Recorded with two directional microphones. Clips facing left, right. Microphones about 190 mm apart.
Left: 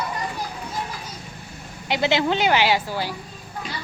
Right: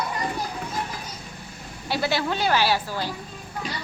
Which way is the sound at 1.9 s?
20° left (ahead or behind).